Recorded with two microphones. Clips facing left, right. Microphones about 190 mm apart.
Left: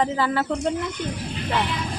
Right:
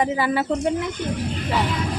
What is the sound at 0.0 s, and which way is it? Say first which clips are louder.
Speech: right 1 dB; 15° right (ahead or behind).